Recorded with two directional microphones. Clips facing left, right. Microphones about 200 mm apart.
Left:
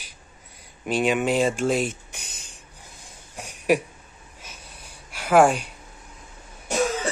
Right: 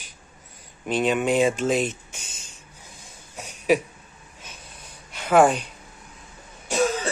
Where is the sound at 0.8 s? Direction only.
10° left (ahead or behind).